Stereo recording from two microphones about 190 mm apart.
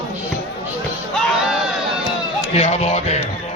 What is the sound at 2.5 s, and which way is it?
Speech, 35° left (ahead or behind).